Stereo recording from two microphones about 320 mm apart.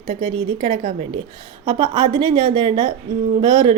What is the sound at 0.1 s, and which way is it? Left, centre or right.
A woman's voice, centre.